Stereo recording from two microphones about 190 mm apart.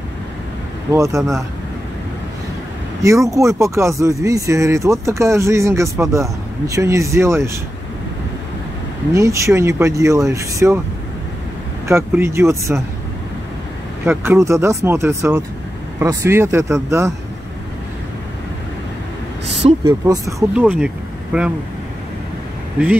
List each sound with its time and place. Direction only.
0.9 s speech: 15° right (ahead or behind)
3.0 s speech: 15° right (ahead or behind)
9.1 s speech: 15° right (ahead or behind)
11.9 s speech: 15° right (ahead or behind)
14.0 s speech: 15° right (ahead or behind)
19.8 s speech: 15° right (ahead or behind)